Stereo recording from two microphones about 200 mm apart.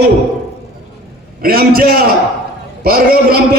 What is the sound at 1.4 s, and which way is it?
A man's voice, 45° right (ahead or behind).